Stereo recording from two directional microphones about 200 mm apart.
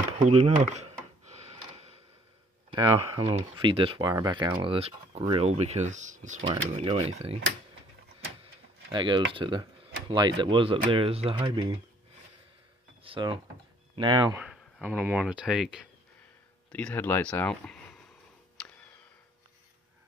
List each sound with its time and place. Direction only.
0.3 s speech: 35° right (ahead or behind)
1.5 s a sound: 30° right (ahead or behind)
2.7 s speech: 25° right (ahead or behind)
8.9 s speech: 25° right (ahead or behind)
13.0 s speech: 25° right (ahead or behind)
14.4 s speech: 5° right (ahead or behind)
16.7 s speech: 10° left (ahead or behind)
18.6 s tick: 5° left (ahead or behind)